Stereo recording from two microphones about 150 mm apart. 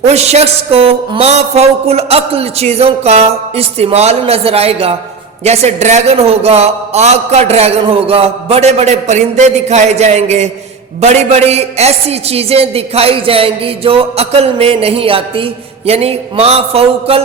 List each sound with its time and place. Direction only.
0.0 s a man's voice: 45° right (ahead or behind)
15.9 s mantra: 40° right (ahead or behind)